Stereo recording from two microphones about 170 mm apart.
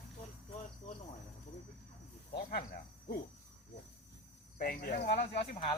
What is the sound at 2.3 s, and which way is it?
Speech, 60° left (ahead or behind).